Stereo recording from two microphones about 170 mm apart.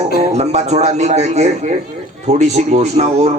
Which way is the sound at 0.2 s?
40° right (ahead or behind).